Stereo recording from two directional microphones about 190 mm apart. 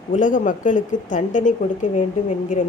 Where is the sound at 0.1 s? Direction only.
45° left (ahead or behind).